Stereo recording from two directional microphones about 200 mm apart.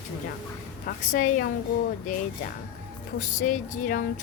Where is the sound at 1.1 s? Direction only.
40° left (ahead or behind).